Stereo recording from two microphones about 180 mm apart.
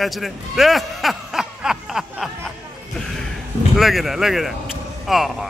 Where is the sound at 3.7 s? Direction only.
Centre (ahead or behind).